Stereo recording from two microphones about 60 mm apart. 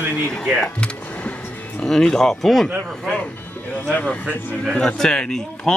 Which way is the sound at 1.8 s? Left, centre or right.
Centre.